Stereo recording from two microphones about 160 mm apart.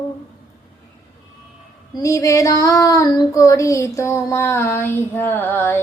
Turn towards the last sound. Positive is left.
turn(degrees=15)  # may be behind; listen again after turning